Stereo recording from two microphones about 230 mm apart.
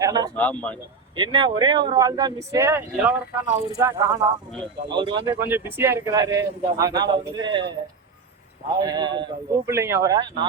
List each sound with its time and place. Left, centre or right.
0.0 s a sound: centre
0.3 s speech: centre
1.1 s speech: centre
5.3 s speech: centre
8.8 s speech: centre